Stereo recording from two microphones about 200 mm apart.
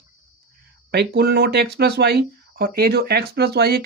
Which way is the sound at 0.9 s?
55° right (ahead or behind).